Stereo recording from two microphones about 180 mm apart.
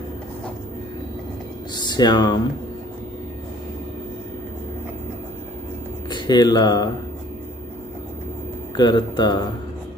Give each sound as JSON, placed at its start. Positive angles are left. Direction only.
{"t": 1.9, "sound": "speech", "side_deg": 25}
{"t": 6.0, "sound": "speech", "side_deg": 25}
{"t": 8.7, "sound": "a man's voice", "side_deg": 25}